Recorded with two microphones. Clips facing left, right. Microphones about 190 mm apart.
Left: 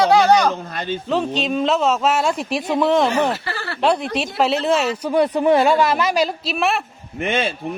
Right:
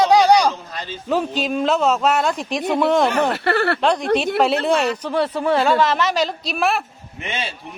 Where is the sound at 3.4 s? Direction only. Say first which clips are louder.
Right 10 dB; 60° right (ahead or behind).